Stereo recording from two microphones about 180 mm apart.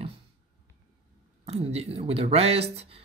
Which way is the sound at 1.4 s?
35° right (ahead or behind).